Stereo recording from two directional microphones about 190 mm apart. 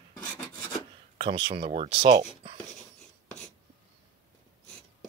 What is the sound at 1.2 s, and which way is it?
Speech, 25° right (ahead or behind).